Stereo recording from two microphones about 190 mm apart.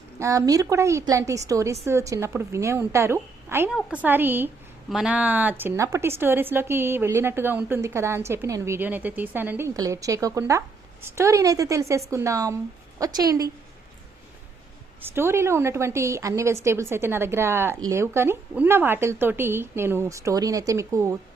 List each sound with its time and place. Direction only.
0.2 s speech: 15° right (ahead or behind)
3.7 s a woman's voice: centre (ahead or behind); by 13.5 s 20° right (ahead or behind)
15.0 s speech: 10° right (ahead or behind)